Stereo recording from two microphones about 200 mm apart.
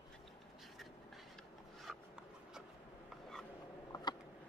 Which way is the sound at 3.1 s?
Centre (ahead or behind).